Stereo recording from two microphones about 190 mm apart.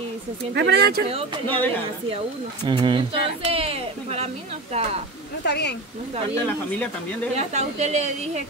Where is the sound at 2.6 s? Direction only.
25° right (ahead or behind).